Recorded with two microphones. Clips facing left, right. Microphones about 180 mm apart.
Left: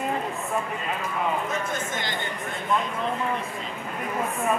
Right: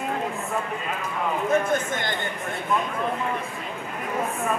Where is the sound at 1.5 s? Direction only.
55° right (ahead or behind).